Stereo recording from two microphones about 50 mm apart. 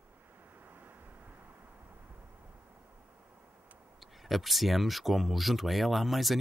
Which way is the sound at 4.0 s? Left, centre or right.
Centre.